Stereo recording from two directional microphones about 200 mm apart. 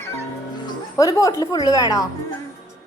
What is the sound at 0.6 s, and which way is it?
Speech, 15° left (ahead or behind).